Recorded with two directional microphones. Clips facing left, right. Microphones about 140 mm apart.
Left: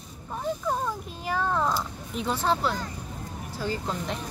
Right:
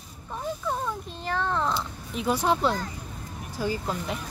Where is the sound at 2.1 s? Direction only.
10° right (ahead or behind).